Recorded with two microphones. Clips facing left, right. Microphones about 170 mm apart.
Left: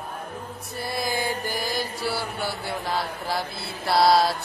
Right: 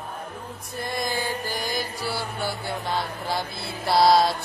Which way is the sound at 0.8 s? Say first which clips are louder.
Left 1 dB; 5° left (ahead or behind).